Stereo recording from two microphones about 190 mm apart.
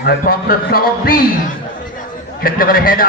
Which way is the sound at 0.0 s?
55° left (ahead or behind).